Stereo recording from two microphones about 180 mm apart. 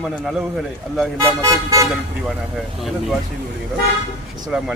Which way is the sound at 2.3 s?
Centre (ahead or behind).